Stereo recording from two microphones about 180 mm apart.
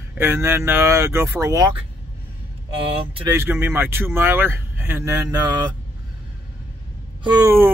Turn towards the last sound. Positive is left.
turn(degrees=-10)  # may be behind; listen again after turning